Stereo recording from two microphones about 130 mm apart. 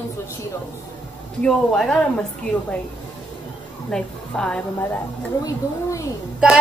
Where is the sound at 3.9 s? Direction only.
5° left (ahead or behind).